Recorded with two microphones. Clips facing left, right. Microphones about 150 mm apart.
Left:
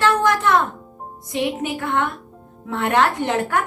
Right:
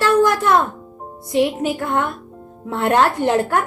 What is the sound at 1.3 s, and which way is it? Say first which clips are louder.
A woman's voice: right 5 dB; 40° right (ahead or behind).